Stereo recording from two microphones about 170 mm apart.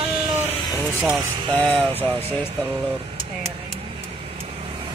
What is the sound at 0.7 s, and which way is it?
Speech, 5° right (ahead or behind).